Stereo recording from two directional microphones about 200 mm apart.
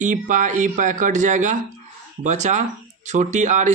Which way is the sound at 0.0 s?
40° right (ahead or behind).